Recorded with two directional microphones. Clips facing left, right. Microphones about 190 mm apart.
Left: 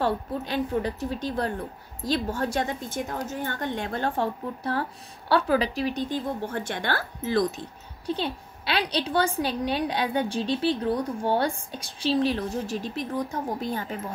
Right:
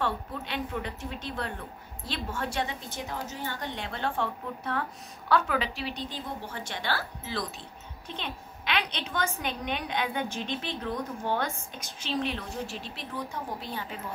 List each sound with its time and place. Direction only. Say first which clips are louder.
0.0 s a woman's voice: left 6 dB; 35° left (ahead or behind)
8.1 s a woman's voice: left 9 dB; 35° left (ahead or behind)